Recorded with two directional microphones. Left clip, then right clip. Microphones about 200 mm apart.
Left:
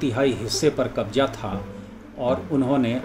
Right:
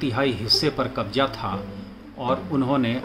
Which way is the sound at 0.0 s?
10° right (ahead or behind).